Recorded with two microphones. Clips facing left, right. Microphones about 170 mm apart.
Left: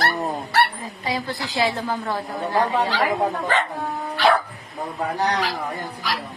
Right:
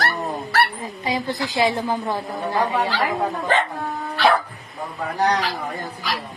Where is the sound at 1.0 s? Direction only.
15° right (ahead or behind).